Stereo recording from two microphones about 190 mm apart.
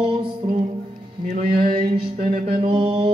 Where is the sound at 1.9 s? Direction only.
55° right (ahead or behind).